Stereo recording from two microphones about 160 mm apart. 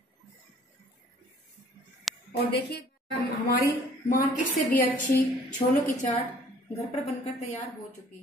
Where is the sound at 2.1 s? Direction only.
Centre (ahead or behind).